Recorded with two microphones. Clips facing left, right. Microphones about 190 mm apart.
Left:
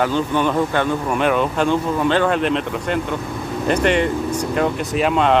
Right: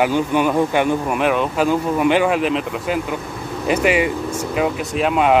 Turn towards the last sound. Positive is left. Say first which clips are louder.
# even
turn(degrees=-5)  # may be behind; listen again after turning